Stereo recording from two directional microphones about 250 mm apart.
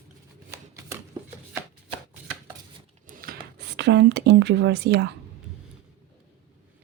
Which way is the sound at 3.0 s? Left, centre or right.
Right.